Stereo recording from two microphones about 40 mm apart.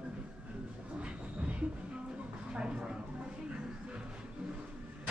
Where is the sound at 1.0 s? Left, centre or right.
Right.